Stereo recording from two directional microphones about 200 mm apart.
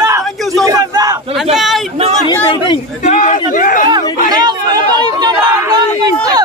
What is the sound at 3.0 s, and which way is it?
Speech, 40° left (ahead or behind).